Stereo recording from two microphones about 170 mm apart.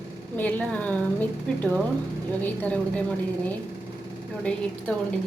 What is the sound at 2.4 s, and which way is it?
Speech, 10° left (ahead or behind).